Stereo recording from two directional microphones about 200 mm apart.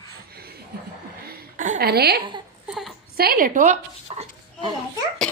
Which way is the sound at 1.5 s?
40° right (ahead or behind).